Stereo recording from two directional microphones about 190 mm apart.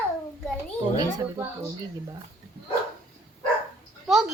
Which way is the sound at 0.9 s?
20° right (ahead or behind).